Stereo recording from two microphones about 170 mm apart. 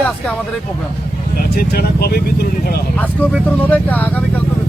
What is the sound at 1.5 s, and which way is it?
Speech, 65° left (ahead or behind).